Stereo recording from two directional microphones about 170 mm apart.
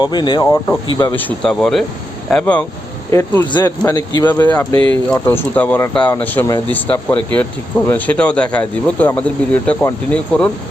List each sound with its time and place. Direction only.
0.0 s speech: 25° left (ahead or behind)
1.1 s speech: 5° left (ahead or behind)
2.3 s cricket: 10° left (ahead or behind)
3.1 s speech: 15° left (ahead or behind)
4.7 s speech: 30° right (ahead or behind)
5.2 s cricket: 10° left (ahead or behind)